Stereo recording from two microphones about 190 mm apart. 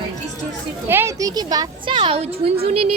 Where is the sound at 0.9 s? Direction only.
15° right (ahead or behind).